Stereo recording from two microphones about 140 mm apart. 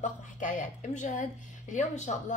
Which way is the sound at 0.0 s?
65° left (ahead or behind).